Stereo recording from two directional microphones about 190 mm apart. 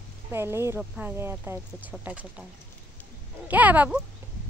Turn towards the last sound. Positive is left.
turn(degrees=-10)  # may be behind; listen again after turning